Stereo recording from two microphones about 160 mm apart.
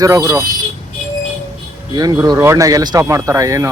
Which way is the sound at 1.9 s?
25° right (ahead or behind).